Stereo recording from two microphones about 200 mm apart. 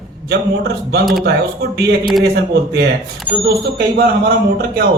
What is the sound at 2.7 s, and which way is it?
A man's voice, 55° right (ahead or behind).